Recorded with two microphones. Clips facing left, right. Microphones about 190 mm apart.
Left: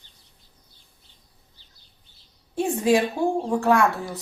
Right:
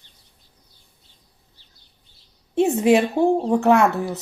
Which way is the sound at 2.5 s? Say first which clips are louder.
Right 4 dB; 25° right (ahead or behind).